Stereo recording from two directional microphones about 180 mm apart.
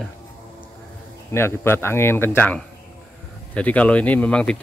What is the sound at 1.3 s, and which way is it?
Speech, 15° left (ahead or behind).